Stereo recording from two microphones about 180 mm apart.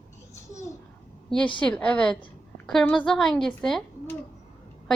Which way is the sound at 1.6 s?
5° left (ahead or behind).